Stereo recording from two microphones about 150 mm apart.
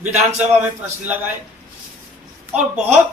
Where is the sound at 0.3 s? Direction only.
10° right (ahead or behind).